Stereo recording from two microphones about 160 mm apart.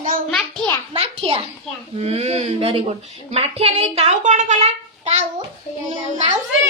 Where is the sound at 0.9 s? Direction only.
35° right (ahead or behind).